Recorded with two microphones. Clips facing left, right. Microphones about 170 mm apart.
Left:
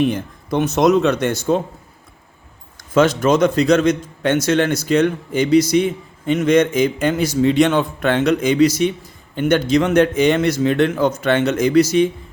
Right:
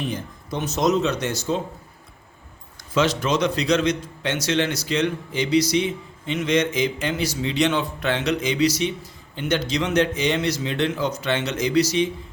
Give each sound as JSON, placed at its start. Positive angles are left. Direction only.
{"t": 0.0, "sound": "speech", "side_deg": 60}
{"t": 2.9, "sound": "a man's voice", "side_deg": 50}